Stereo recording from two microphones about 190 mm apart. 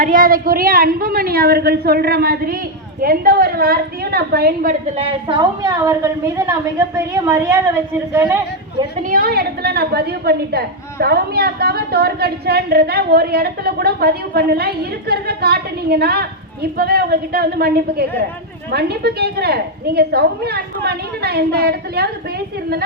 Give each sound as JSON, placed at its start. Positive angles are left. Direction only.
{"t": 0.0, "sound": "a woman's voice", "side_deg": -45}
{"t": 4.9, "sound": "a woman's voice", "side_deg": -25}
{"t": 9.0, "sound": "a woman's voice", "side_deg": -50}